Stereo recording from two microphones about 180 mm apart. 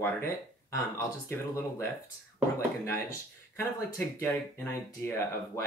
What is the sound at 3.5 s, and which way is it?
Speech, 10° left (ahead or behind).